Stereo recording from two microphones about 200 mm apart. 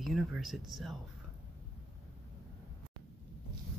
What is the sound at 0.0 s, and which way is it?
Speech, centre (ahead or behind).